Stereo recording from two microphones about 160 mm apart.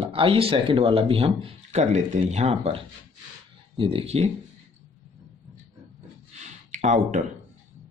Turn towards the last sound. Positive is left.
turn(degrees=-55)  # may be behind; listen again after turning